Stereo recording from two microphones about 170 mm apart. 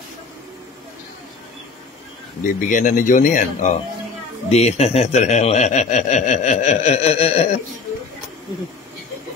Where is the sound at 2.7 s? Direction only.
45° left (ahead or behind).